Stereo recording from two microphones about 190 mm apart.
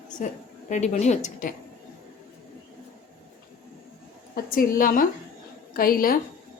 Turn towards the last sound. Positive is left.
turn(degrees=50)  # may be behind; listen again after turning